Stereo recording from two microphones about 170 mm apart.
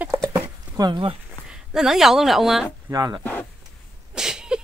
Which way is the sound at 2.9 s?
25° right (ahead or behind).